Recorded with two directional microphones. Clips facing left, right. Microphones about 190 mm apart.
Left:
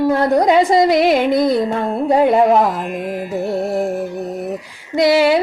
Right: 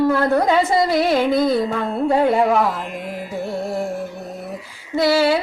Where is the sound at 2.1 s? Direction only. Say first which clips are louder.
Left 4 dB; 20° left (ahead or behind).